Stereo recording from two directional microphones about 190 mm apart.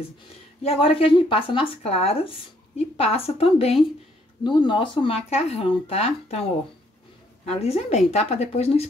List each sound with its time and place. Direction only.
0.6 s a woman's voice: 30° left (ahead or behind)